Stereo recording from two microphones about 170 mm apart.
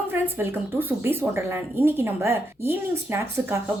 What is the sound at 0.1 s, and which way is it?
A woman's voice, 10° right (ahead or behind).